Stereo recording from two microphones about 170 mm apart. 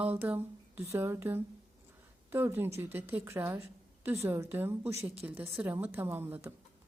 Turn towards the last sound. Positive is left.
turn(degrees=-10)  # may be behind; listen again after turning